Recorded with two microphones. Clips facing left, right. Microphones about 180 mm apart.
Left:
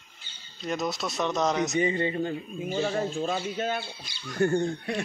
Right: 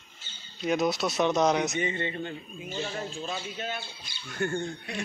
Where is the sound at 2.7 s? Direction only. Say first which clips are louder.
Left 7 dB; 50° left (ahead or behind).